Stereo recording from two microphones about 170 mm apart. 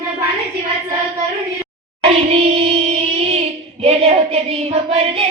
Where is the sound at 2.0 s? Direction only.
35° right (ahead or behind).